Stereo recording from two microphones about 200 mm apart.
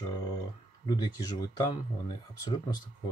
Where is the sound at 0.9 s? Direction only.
20° left (ahead or behind).